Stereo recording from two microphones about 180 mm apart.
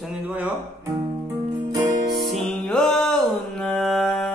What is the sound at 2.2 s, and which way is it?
Music, 35° right (ahead or behind).